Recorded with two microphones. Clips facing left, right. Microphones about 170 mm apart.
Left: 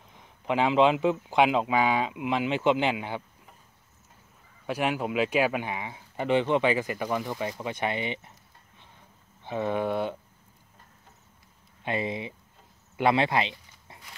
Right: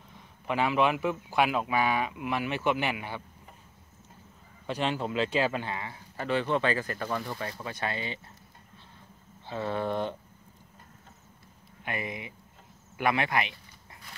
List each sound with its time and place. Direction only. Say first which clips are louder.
0.1 s speech: left 4 dB; 20° left (ahead or behind)
4.6 s speech: left 2 dB; 10° left (ahead or behind)
9.4 s speech: left 3 dB; 20° left (ahead or behind)
11.8 s speech: left 6 dB; 25° left (ahead or behind)
12.9 s a sound: left 4 dB; 25° left (ahead or behind)